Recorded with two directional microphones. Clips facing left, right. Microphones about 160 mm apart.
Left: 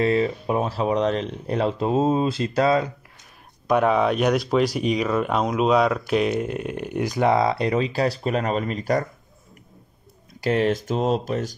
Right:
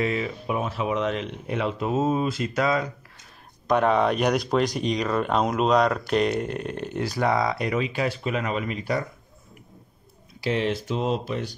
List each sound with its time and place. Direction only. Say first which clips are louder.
0.0 s speech: left 6 dB; 35° left (ahead or behind)
3.6 s speech: left 1 dB; 5° left (ahead or behind); by 9.0 s 40° left (ahead or behind)
10.4 s speech: left 4 dB; 45° left (ahead or behind)